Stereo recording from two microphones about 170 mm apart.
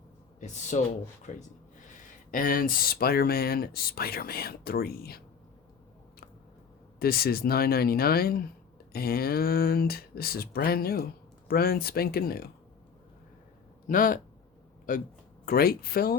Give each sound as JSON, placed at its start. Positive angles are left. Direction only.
{"t": 0.3, "sound": "speech", "side_deg": 45}
{"t": 7.0, "sound": "speech", "side_deg": 65}
{"t": 13.8, "sound": "speech", "side_deg": 55}
{"t": 15.4, "sound": "speech", "side_deg": 65}